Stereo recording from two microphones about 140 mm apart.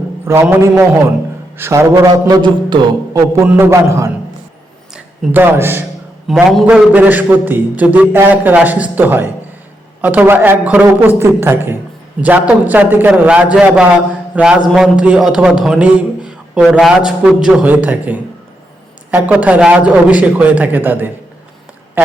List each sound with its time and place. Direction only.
0.3 s a man's voice: 15° right (ahead or behind)
1.5 s a man's voice: 20° right (ahead or behind)
6.2 s a man's voice: centre (ahead or behind)
6.9 s a man's voice: 10° right (ahead or behind)
22.0 s a sound: 15° right (ahead or behind)